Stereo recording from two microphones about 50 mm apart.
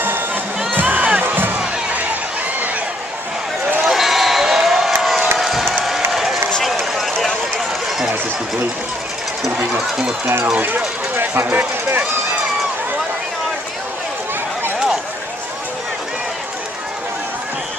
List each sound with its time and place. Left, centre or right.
0.0 s music: right
0.7 s crowd: right
3.8 s a sound: centre
6.1 s run: centre
7.2 s run: centre
10.2 s speech: right